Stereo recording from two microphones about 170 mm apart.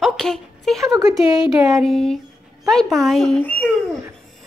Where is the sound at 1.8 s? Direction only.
Centre (ahead or behind).